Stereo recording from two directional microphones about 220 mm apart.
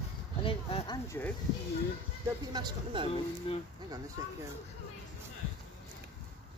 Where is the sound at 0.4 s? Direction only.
25° left (ahead or behind).